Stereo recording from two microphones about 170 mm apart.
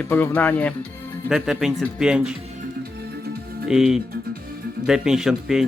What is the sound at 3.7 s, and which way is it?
Speech, 5° right (ahead or behind).